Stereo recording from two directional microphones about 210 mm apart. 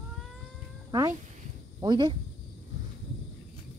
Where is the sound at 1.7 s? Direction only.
20° right (ahead or behind).